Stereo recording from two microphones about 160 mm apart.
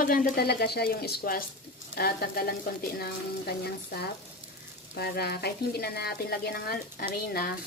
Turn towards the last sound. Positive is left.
turn(degrees=75)  # may be behind; listen again after turning